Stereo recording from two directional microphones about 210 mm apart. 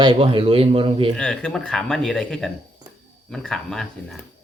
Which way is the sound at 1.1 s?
5° left (ahead or behind).